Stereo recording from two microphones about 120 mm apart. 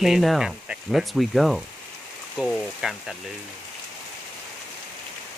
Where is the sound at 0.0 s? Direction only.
Centre (ahead or behind).